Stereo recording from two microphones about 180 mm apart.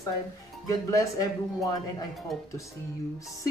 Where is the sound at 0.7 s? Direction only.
20° left (ahead or behind).